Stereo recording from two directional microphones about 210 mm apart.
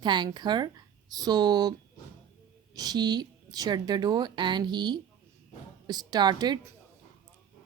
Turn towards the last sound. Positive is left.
turn(degrees=-20)  # may be behind; listen again after turning